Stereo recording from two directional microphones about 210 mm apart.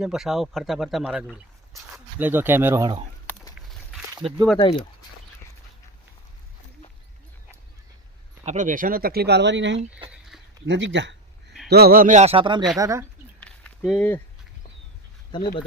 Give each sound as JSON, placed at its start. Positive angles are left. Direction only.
{"t": 0.0, "sound": "speech", "side_deg": 0}
{"t": 4.1, "sound": "speech", "side_deg": -20}
{"t": 4.6, "sound": "speech", "side_deg": 25}
{"t": 8.4, "sound": "speech", "side_deg": -35}
{"t": 10.1, "sound": "a sound", "side_deg": 0}
{"t": 10.7, "sound": "speech", "side_deg": -60}
{"t": 11.7, "sound": "speech", "side_deg": -45}
{"t": 13.4, "sound": "a sound", "side_deg": 5}
{"t": 15.3, "sound": "speech", "side_deg": 25}